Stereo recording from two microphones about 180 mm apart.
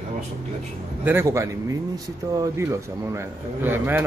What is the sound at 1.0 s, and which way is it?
Speech, 15° right (ahead or behind).